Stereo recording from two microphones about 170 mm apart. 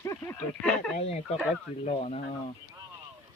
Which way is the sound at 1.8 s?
35° left (ahead or behind).